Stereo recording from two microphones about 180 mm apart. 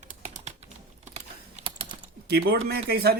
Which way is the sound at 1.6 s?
30° right (ahead or behind).